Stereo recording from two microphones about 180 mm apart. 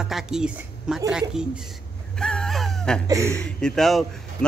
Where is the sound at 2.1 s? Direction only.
5° left (ahead or behind).